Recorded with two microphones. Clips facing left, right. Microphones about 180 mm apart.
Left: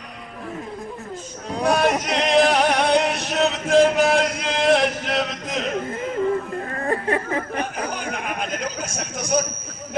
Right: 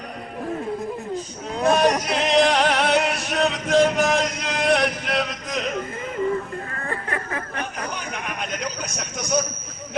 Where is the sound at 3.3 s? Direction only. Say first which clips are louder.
Left 2 dB; 25° left (ahead or behind).